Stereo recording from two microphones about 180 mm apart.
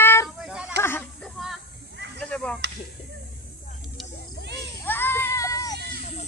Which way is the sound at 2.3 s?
5° left (ahead or behind).